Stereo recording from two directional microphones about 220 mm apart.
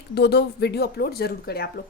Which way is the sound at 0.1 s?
50° left (ahead or behind).